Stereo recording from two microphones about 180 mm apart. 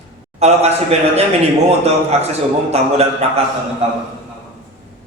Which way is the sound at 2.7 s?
35° right (ahead or behind).